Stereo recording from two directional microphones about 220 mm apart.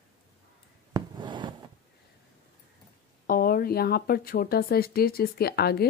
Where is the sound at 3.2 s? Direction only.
40° left (ahead or behind).